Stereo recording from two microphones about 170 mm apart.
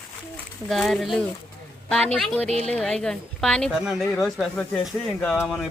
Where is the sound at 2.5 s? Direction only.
40° right (ahead or behind).